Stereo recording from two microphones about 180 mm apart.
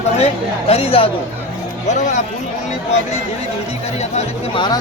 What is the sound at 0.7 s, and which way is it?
Speech, 35° left (ahead or behind).